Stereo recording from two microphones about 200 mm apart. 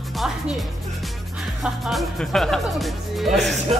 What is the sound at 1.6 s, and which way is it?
Speech, centre (ahead or behind).